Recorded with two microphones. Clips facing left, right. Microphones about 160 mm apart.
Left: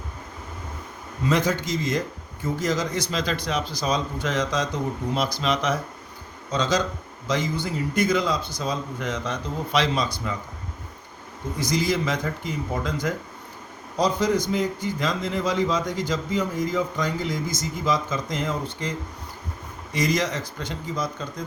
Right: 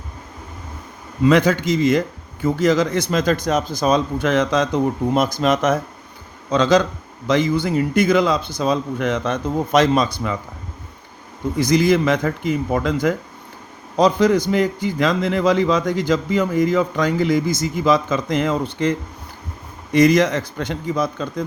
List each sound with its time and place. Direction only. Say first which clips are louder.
1.3 s speech: right 7 dB; 65° right (ahead or behind)
6.5 s speech: right 8 dB; 60° right (ahead or behind)
11.6 s a man's voice: right 8 dB; 60° right (ahead or behind)
19.9 s speech: right 10 dB; 60° right (ahead or behind)